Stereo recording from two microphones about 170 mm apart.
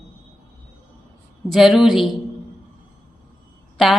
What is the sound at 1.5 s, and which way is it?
Speech, centre (ahead or behind).